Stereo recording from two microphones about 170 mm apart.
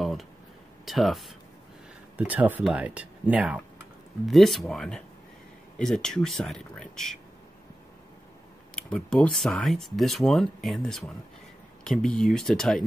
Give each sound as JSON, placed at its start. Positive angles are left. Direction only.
{"t": 0.0, "sound": "a sound", "side_deg": 0}
{"t": 0.8, "sound": "speech", "side_deg": 0}
{"t": 8.7, "sound": "speech", "side_deg": 5}